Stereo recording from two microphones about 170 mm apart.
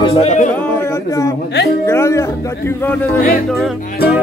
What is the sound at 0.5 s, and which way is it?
Speech, 10° left (ahead or behind).